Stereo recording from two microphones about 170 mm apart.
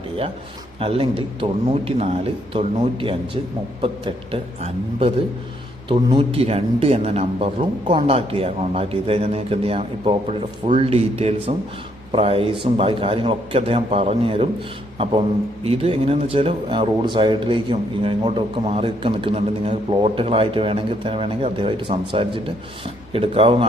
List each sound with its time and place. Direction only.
0.8 s speech: 35° right (ahead or behind)
6.1 s a man's voice: 35° right (ahead or behind)